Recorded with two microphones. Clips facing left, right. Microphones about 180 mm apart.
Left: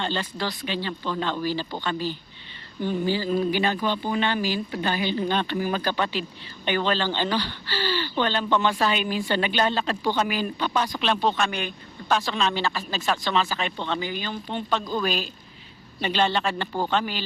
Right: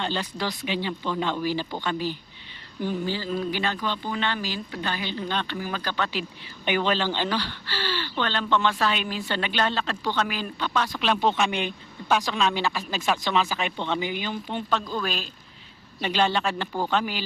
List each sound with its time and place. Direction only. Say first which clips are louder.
0.0 s speech: even; 10° right (ahead or behind)
3.1 s speech: left 4 dB; 5° left (ahead or behind)
6.7 s speech: even; 10° right (ahead or behind); by 10.9 s 5° left (ahead or behind)
11.2 s speech: right 1 dB; 15° right (ahead or behind)
12.2 s speech: even; 5° right (ahead or behind)
14.4 s speech: left 1 dB; centre (ahead or behind)